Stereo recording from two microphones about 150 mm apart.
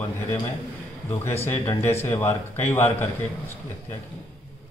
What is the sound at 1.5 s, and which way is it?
Speech, 35° left (ahead or behind).